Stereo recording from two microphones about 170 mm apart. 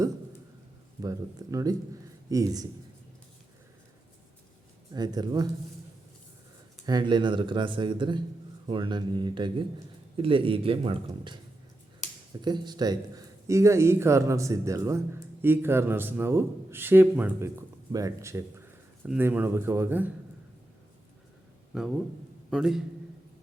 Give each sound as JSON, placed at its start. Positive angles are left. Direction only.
{"t": 1.0, "sound": "speech", "side_deg": -20}
{"t": 4.9, "sound": "speech", "side_deg": -25}
{"t": 6.8, "sound": "a man's voice", "side_deg": -25}
{"t": 12.4, "sound": "speech", "side_deg": -25}
{"t": 22.4, "sound": "a man's voice", "side_deg": 0}